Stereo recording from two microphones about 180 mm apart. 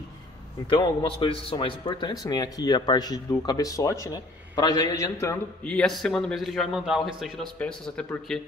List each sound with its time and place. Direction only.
0.7 s speech: 30° left (ahead or behind)
5.7 s a man's voice: centre (ahead or behind)